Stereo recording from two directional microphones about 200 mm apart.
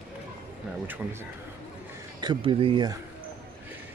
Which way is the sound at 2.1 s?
25° right (ahead or behind).